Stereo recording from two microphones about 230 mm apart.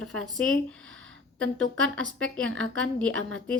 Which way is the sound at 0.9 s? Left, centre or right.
Right.